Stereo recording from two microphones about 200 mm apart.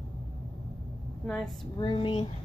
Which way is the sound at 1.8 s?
25° left (ahead or behind).